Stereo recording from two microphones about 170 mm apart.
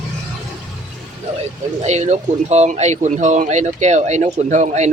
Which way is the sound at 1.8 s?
40° right (ahead or behind).